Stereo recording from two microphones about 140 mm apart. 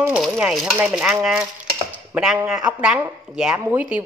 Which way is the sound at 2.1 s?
10° right (ahead or behind).